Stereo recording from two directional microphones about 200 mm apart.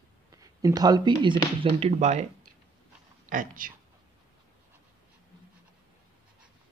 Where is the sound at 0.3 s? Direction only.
15° right (ahead or behind); by 2.2 s 35° right (ahead or behind).